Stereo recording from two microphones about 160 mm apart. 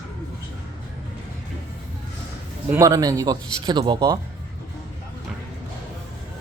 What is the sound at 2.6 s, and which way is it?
Speech, 20° right (ahead or behind).